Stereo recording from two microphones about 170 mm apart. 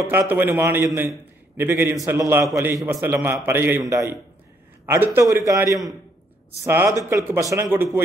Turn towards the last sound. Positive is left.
turn(degrees=-15)  # may be behind; listen again after turning